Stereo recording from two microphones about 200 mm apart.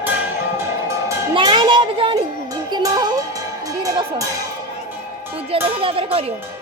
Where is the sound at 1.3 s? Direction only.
25° right (ahead or behind).